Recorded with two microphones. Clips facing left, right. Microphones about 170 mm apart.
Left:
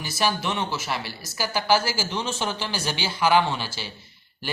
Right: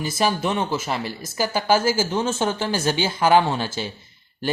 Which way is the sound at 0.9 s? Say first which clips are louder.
Right 4 dB; 50° right (ahead or behind).